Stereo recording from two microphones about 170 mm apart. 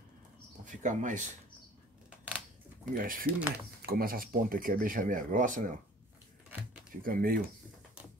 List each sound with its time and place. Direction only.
0.7 s speech: 50° right (ahead or behind)
2.0 s a sound: 5° right (ahead or behind)
3.0 s speech: 55° right (ahead or behind)
3.3 s speech: 10° right (ahead or behind)
3.8 s speech: 60° right (ahead or behind)
7.0 s speech: 55° right (ahead or behind)